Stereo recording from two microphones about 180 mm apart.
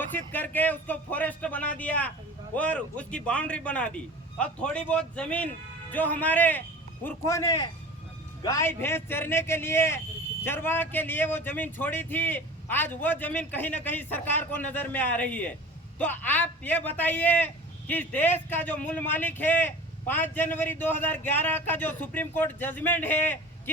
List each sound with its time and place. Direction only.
0.0 s a man's voice: 10° left (ahead or behind)